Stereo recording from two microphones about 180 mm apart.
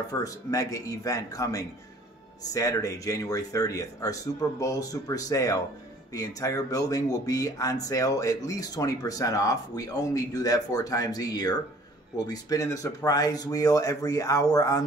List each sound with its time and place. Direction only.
0.1 s speech: 20° left (ahead or behind)